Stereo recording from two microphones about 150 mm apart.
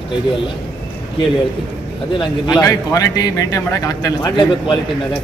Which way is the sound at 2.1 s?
30° left (ahead or behind).